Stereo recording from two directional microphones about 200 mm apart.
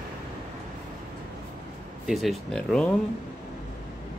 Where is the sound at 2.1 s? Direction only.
Centre (ahead or behind).